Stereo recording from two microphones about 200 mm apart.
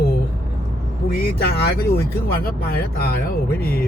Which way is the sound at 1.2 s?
50° left (ahead or behind).